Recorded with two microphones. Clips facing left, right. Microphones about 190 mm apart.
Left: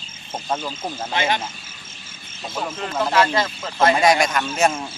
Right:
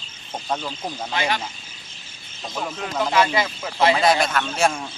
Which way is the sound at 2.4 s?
5° left (ahead or behind).